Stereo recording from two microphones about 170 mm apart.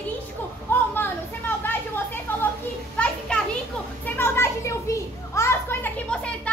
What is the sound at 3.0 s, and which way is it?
Children playing, 5° left (ahead or behind).